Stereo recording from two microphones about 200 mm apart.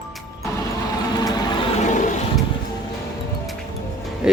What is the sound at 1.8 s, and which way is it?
Toilet flush, 40° left (ahead or behind).